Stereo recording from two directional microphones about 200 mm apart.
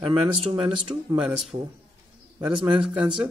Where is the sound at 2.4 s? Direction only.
25° right (ahead or behind).